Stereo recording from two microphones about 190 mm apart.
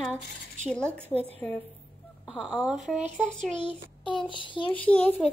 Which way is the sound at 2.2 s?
Centre (ahead or behind).